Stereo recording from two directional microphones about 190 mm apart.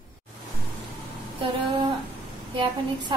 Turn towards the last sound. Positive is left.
turn(degrees=-25)  # may be behind; listen again after turning